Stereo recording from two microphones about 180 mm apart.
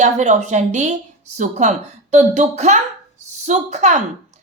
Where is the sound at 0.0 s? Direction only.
40° right (ahead or behind).